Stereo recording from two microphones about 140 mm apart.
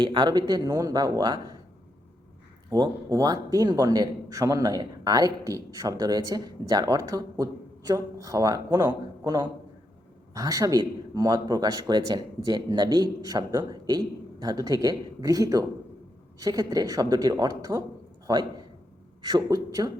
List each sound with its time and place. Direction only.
0.0 s a man's voice: 30° right (ahead or behind)
2.6 s a man's voice: 30° right (ahead or behind)
19.2 s a man's voice: 30° right (ahead or behind)